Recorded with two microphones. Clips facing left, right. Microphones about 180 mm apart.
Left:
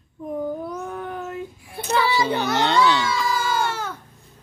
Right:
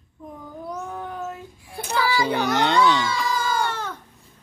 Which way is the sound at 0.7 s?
65° left (ahead or behind).